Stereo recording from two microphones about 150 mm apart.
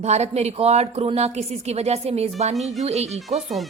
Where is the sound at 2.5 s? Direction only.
Centre (ahead or behind).